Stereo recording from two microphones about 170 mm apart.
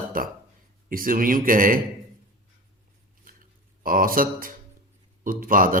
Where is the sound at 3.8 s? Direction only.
55° right (ahead or behind).